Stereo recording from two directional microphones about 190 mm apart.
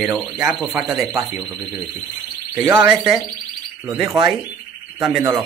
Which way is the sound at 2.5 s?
10° right (ahead or behind).